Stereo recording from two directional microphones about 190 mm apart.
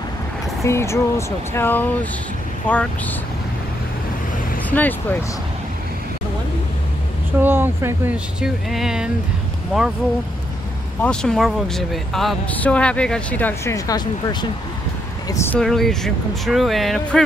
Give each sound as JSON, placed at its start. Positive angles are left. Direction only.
{"t": 0.7, "sound": "speech", "side_deg": 15}
{"t": 4.6, "sound": "speech", "side_deg": 10}
{"t": 7.3, "sound": "speech", "side_deg": -10}
{"t": 11.0, "sound": "speech", "side_deg": 5}
{"t": 15.5, "sound": "speech", "side_deg": 0}